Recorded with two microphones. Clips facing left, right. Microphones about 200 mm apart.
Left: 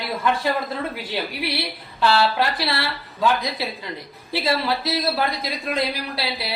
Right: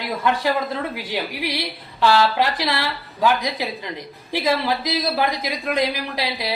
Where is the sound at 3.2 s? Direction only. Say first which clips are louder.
Right 1 dB; 15° right (ahead or behind).